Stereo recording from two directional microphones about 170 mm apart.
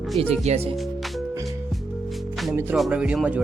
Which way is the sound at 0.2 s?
35° right (ahead or behind).